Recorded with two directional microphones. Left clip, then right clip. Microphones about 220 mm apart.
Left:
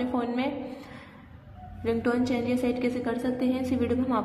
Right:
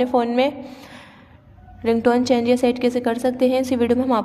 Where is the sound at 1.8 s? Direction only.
50° right (ahead or behind).